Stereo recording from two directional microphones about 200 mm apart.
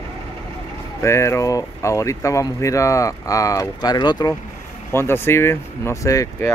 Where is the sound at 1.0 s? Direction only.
15° left (ahead or behind).